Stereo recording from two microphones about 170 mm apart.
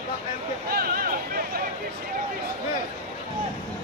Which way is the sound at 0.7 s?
60° right (ahead or behind).